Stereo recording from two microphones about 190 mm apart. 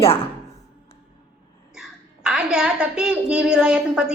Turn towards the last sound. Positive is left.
turn(degrees=-5)  # may be behind; listen again after turning